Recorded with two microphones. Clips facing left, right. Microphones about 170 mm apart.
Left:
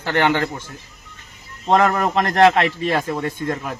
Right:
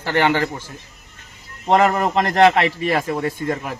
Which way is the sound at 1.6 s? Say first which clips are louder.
Right 1 dB; 15° right (ahead or behind).